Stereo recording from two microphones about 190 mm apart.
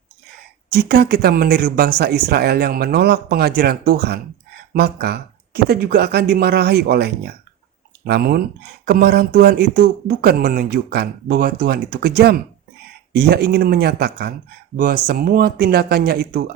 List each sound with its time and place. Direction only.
0.7 s speech: 55° right (ahead or behind)